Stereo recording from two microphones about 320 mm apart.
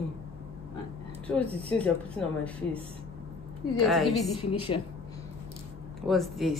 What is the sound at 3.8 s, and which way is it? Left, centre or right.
Speech, centre.